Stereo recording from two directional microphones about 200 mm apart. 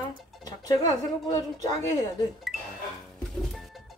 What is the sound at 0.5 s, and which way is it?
Speech, 20° left (ahead or behind).